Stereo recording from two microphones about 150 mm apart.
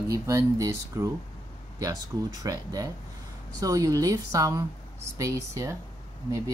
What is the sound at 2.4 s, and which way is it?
Speech, 25° right (ahead or behind).